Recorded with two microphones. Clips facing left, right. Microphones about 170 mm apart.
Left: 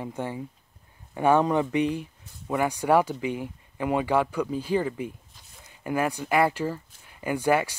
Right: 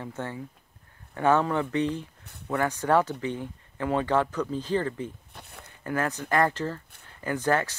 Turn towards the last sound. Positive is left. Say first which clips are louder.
# left 2 dB
turn(degrees=10)  # may be behind; listen again after turning